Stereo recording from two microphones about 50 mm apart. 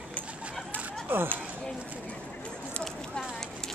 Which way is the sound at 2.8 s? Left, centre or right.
Centre.